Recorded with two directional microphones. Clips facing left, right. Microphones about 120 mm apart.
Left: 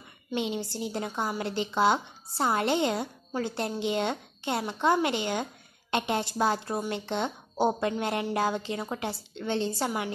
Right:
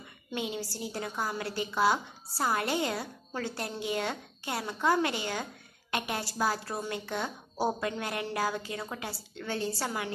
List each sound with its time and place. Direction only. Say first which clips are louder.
0.3 s a woman's voice: left 4 dB; 25° left (ahead or behind)